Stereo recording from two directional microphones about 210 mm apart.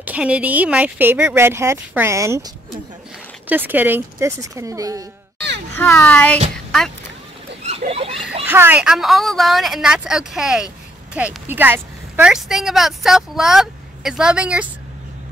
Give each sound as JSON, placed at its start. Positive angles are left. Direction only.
{"t": 0.0, "sound": "speech", "side_deg": -5}
{"t": 5.8, "sound": "speech", "side_deg": 10}
{"t": 6.5, "sound": "music", "side_deg": 0}
{"t": 7.6, "sound": "a sound", "side_deg": -30}
{"t": 8.5, "sound": "speech", "side_deg": -10}